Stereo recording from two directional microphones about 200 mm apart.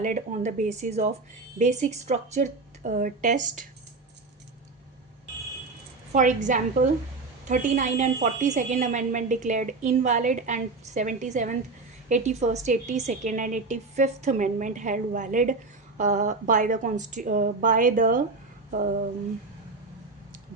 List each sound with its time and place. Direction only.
0.0 s a woman's voice: 40° right (ahead or behind)
6.1 s a woman's voice: 40° right (ahead or behind)